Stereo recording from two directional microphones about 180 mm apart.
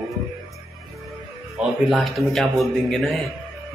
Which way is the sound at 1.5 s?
Centre (ahead or behind).